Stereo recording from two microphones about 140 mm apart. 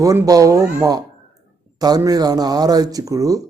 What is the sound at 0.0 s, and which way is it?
Speech, 25° right (ahead or behind).